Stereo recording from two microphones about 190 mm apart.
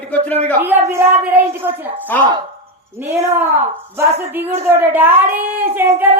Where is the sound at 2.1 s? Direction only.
10° left (ahead or behind).